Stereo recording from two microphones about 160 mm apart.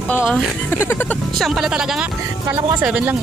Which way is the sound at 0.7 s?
10° left (ahead or behind).